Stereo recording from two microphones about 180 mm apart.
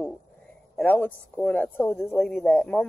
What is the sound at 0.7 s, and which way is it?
A man's voice, 10° left (ahead or behind).